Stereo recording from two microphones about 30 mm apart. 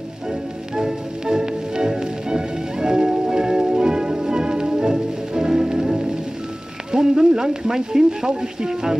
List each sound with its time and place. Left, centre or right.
0.7 s music: centre
6.9 s a sound: right
8.4 s speech: centre